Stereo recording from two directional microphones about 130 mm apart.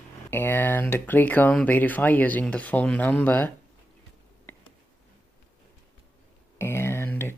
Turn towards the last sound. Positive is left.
turn(degrees=20)  # may be behind; listen again after turning